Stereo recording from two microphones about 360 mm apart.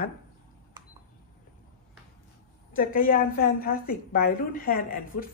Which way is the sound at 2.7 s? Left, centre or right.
Left.